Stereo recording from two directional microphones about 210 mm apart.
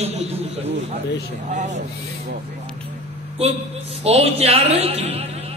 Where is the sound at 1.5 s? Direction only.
35° right (ahead or behind).